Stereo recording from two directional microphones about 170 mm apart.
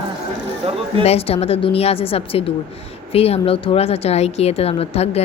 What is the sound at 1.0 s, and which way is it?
A woman's voice, 35° left (ahead or behind).